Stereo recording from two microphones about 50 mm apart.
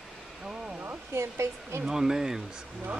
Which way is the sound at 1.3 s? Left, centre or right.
Right.